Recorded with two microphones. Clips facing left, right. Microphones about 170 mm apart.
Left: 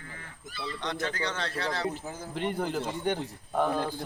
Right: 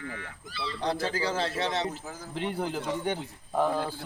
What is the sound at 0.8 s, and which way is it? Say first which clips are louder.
Speech: right 4 dB; 30° right (ahead or behind).